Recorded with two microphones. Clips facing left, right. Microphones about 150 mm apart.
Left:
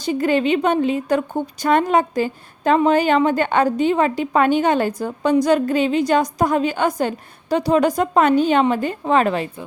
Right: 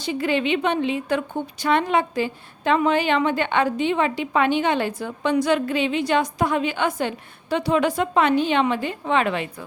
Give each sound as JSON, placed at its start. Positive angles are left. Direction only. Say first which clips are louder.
{"t": 0.0, "sound": "a woman's voice", "louder": "left 4 dB", "side_deg": 45}